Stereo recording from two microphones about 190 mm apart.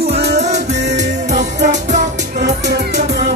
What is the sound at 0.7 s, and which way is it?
Music, 65° right (ahead or behind).